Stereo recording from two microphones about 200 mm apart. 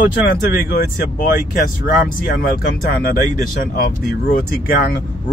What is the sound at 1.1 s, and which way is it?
Speech, 45° left (ahead or behind).